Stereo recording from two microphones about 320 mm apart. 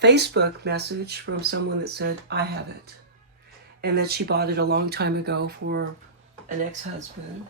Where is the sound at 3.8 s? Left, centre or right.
Right.